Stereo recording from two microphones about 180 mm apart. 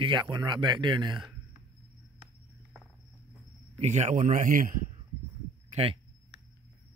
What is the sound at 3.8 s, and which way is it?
A man's voice, 40° right (ahead or behind).